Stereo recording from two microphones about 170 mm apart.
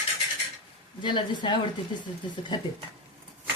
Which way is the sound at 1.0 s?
25° left (ahead or behind).